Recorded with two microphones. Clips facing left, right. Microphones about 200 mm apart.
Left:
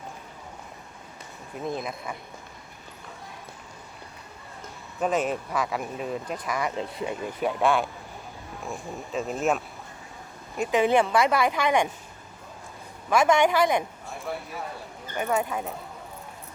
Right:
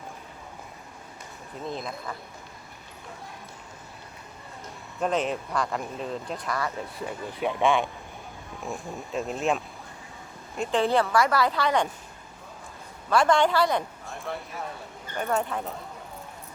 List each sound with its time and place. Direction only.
1.6 s speech: 15° left (ahead or behind)
4.9 s speech: 5° left (ahead or behind)
6.5 s speech: 15° left (ahead or behind)
7.4 s speech: centre (ahead or behind)
10.6 s speech: 15° left (ahead or behind)
13.1 s speech: 10° left (ahead or behind)